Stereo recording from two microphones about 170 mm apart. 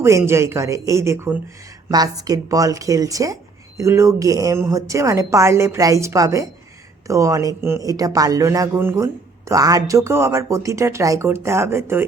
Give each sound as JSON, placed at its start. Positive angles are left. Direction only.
{"t": 0.0, "sound": "a woman's voice", "side_deg": -15}